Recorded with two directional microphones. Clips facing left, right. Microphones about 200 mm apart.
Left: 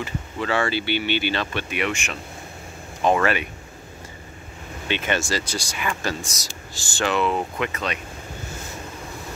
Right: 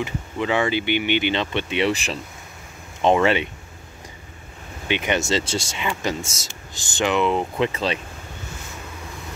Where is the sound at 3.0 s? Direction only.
25° right (ahead or behind).